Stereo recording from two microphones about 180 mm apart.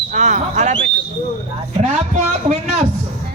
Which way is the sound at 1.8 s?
40° right (ahead or behind).